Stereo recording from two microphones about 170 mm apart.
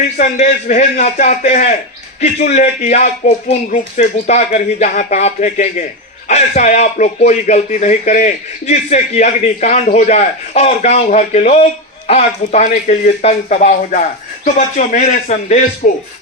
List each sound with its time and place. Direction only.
0.2 s speech: 45° left (ahead or behind)
15.8 s music: 55° left (ahead or behind)